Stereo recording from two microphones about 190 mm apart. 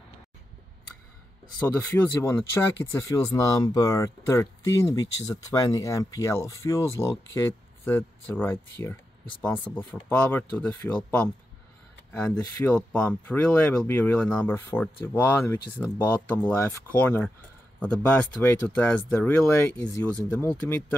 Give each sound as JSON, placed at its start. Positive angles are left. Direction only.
{"t": 1.6, "sound": "speech", "side_deg": 10}